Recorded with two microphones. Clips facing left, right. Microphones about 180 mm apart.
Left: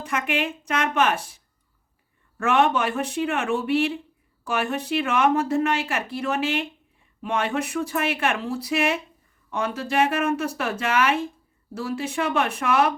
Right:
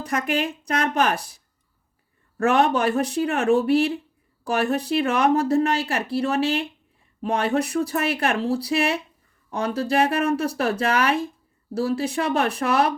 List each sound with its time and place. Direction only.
0.0 s speech: 40° right (ahead or behind)
2.4 s speech: 35° right (ahead or behind)